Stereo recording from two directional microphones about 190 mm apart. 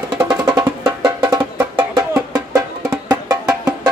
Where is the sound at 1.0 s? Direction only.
20° right (ahead or behind).